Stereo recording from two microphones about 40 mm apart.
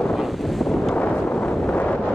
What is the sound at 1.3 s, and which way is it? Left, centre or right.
Wind noise, left.